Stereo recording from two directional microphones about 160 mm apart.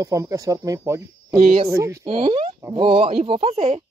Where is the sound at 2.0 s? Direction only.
35° right (ahead or behind).